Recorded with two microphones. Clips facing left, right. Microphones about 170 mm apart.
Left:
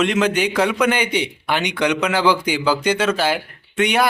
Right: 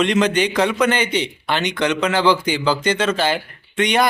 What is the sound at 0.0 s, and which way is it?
A man's voice, 5° left (ahead or behind).